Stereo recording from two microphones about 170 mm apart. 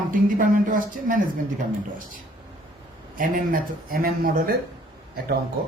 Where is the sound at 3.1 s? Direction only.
55° right (ahead or behind).